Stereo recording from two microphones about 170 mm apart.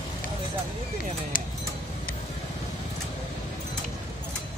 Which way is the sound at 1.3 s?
55° left (ahead or behind).